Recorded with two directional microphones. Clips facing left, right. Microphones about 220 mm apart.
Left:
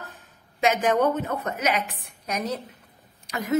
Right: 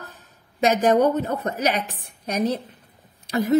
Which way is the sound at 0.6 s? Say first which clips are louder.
Right 4 dB; 35° right (ahead or behind).